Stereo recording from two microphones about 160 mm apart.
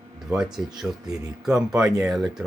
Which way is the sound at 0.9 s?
5° right (ahead or behind).